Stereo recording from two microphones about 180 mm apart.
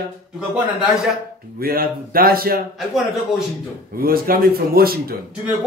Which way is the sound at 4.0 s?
55° right (ahead or behind).